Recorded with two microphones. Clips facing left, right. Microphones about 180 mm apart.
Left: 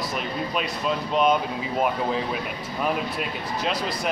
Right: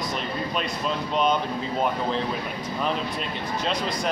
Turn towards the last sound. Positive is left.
turn(degrees=5)  # may be behind; listen again after turning